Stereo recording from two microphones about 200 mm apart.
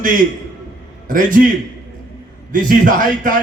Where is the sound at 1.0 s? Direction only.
40° right (ahead or behind).